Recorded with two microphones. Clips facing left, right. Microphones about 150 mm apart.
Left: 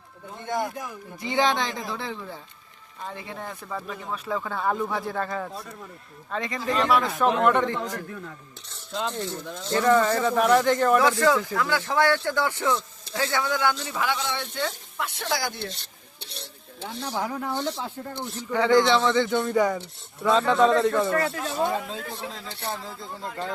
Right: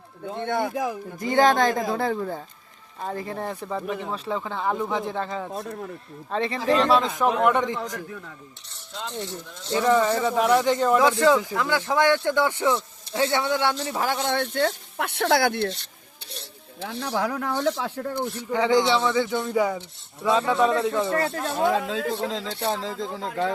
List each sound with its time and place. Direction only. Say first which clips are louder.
0.3 s speech: right 3 dB; 65° right (ahead or behind)
1.2 s speech: right 5 dB; 45° right (ahead or behind); by 8.0 s 15° right (ahead or behind)
9.7 s speech: even; 10° right (ahead or behind); by 15.7 s 60° right (ahead or behind)
17.2 s speech: right 3 dB; 80° right
18.5 s speech: left 1 dB; 15° right (ahead or behind)
21.1 s speech: right 1 dB; 35° right (ahead or behind)
21.6 s speech: right 5 dB; 90° right